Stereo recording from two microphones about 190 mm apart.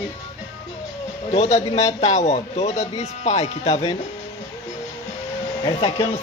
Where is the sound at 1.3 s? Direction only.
35° left (ahead or behind).